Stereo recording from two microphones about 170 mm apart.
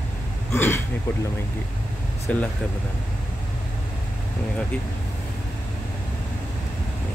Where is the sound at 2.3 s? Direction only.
10° left (ahead or behind).